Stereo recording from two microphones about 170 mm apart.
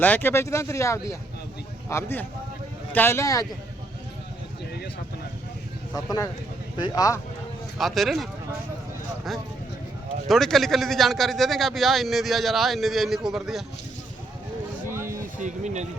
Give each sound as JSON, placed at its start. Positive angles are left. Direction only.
{"t": 0.0, "sound": "speech", "side_deg": 10}
{"t": 5.9, "sound": "speech", "side_deg": 20}
{"t": 7.8, "sound": "a man's voice", "side_deg": 0}
{"t": 10.2, "sound": "a man's voice", "side_deg": 0}
{"t": 14.9, "sound": "a sound", "side_deg": -15}
{"t": 15.4, "sound": "speech", "side_deg": -45}